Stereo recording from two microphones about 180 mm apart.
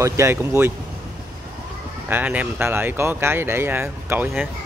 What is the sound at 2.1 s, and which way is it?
Speech, 10° right (ahead or behind).